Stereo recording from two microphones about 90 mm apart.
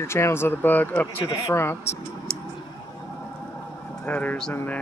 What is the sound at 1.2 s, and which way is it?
Speech, 45° left (ahead or behind).